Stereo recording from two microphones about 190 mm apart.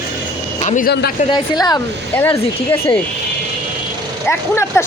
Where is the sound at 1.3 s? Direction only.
20° left (ahead or behind).